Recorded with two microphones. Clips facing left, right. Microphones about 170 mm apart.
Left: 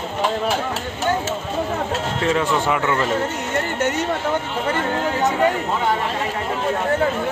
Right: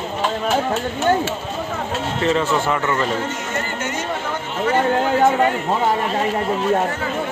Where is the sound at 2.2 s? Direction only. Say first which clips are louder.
Right 2 dB; 5° left (ahead or behind).